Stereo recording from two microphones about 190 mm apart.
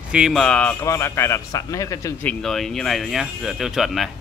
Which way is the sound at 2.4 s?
Centre (ahead or behind).